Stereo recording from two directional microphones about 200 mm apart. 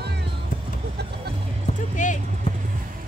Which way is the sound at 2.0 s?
40° left (ahead or behind).